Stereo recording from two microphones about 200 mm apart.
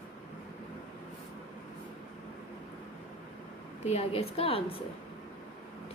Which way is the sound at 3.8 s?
30° left (ahead or behind).